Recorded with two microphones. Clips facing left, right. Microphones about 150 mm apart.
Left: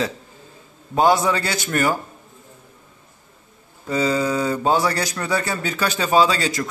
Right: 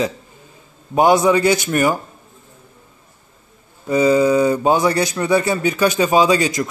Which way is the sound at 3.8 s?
15° right (ahead or behind).